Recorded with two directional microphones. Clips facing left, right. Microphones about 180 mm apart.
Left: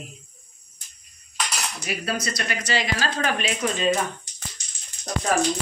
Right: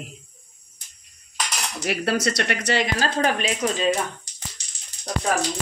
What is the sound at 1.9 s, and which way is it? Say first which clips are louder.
Speech: right 6 dB; 70° right (ahead or behind).